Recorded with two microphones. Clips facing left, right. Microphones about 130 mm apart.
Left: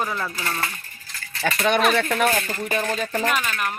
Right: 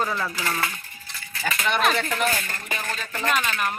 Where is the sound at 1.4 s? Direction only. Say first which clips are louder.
Left 5 dB; 70° left (ahead or behind).